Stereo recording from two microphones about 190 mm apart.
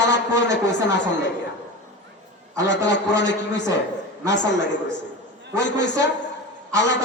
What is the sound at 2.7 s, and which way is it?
A man's voice, 65° left (ahead or behind).